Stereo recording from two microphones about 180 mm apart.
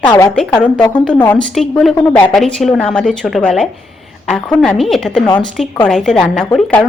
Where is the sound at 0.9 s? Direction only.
5° left (ahead or behind).